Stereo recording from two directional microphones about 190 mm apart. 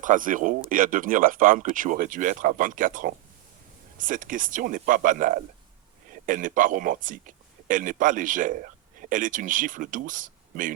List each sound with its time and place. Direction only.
0.0 s a man's voice: 45° right (ahead or behind)